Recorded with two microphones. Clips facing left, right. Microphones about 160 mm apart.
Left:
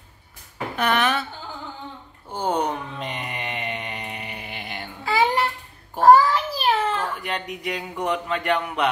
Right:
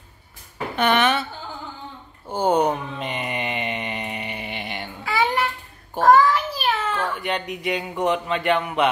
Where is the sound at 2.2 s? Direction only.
5° right (ahead or behind).